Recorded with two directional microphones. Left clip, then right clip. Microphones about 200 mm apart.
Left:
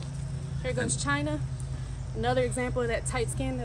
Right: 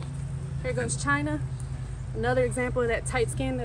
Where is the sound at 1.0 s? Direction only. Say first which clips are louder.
Right 3 dB; 15° left (ahead or behind).